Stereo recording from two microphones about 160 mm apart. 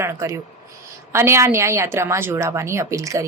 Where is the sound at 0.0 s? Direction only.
15° right (ahead or behind).